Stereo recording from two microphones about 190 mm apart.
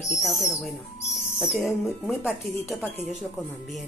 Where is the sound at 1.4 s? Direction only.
Centre (ahead or behind).